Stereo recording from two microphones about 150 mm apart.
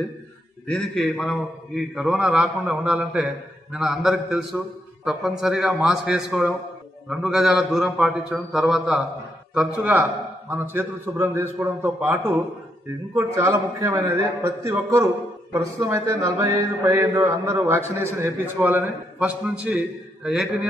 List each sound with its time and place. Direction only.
0.7 s a man's voice: 5° left (ahead or behind)
9.5 s mantra: 10° right (ahead or behind)
13.3 s a man's voice: 20° right (ahead or behind)
15.5 s mantra: 20° right (ahead or behind)